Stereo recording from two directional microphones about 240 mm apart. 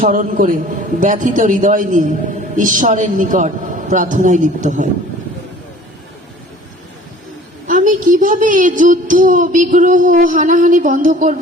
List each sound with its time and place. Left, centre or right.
0.0 s a woman's voice: right
7.7 s a woman's voice: right